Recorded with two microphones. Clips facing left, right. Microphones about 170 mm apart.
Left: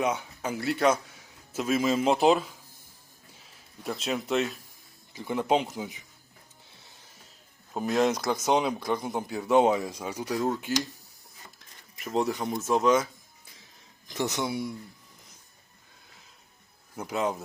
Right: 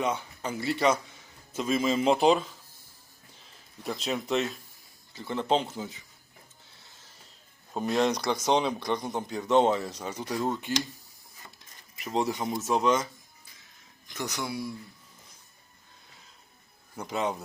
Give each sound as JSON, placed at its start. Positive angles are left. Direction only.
{"t": 0.0, "sound": "a man's voice", "side_deg": 5}
{"t": 3.8, "sound": "speech", "side_deg": 0}
{"t": 5.1, "sound": "speech", "side_deg": 15}
{"t": 7.7, "sound": "speech", "side_deg": 5}
{"t": 11.9, "sound": "speech", "side_deg": 0}
{"t": 14.1, "sound": "speech", "side_deg": 25}
{"t": 16.9, "sound": "speech", "side_deg": 5}